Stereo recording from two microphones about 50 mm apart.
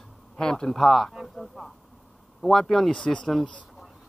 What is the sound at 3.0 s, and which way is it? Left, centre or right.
Speech, centre.